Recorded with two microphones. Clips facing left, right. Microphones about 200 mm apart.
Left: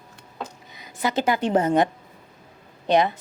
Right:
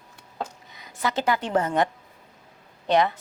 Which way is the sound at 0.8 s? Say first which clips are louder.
Left 2 dB; 15° left (ahead or behind).